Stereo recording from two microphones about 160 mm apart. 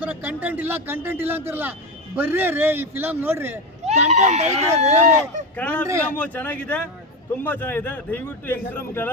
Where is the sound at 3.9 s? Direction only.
45° right (ahead or behind).